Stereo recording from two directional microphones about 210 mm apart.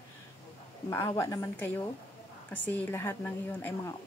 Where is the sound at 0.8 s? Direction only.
15° left (ahead or behind).